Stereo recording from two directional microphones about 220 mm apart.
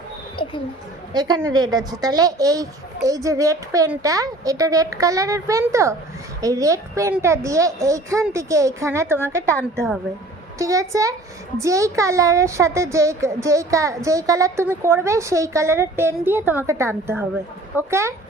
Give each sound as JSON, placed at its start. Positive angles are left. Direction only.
{"t": 1.1, "sound": "speech", "side_deg": -20}
{"t": 10.6, "sound": "speech", "side_deg": -15}